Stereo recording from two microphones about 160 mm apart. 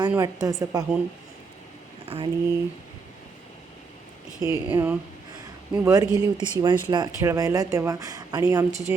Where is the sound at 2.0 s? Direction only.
35° right (ahead or behind).